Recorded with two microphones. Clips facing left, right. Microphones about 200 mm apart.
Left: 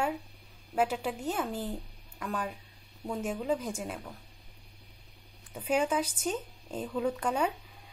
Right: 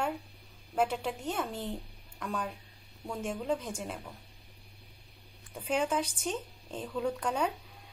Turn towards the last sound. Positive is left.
turn(degrees=5)  # may be behind; listen again after turning